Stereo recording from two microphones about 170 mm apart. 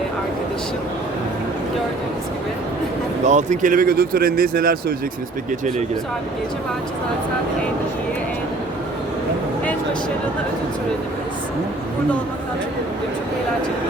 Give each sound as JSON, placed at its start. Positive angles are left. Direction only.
{"t": 3.2, "sound": "speech", "side_deg": -45}
{"t": 5.5, "sound": "speech", "side_deg": -45}